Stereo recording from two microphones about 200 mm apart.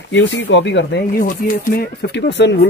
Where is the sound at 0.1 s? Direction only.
65° left (ahead or behind).